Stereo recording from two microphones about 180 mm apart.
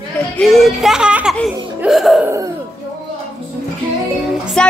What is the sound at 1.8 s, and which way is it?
Music, centre (ahead or behind).